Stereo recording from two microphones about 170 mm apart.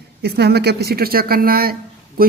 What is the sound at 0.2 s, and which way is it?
Speech, 70° right (ahead or behind).